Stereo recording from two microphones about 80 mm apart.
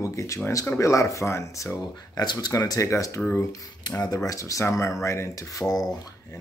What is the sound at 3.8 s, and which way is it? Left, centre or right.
Speech, left.